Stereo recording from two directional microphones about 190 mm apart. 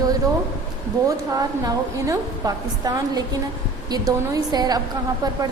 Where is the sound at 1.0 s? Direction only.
20° right (ahead or behind).